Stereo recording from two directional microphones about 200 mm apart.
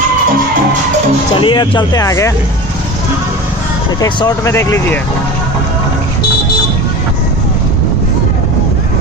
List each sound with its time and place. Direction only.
1.4 s speech: 25° left (ahead or behind)
4.0 s speech: 20° left (ahead or behind)